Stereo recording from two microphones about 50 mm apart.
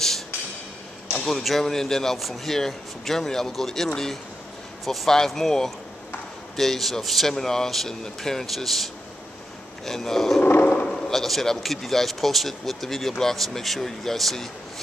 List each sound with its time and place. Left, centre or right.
1.2 s speech: centre
10.6 s sheep: left
10.9 s speech: centre